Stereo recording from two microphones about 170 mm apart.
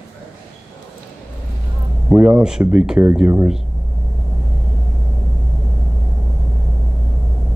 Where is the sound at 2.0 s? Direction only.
5° right (ahead or behind).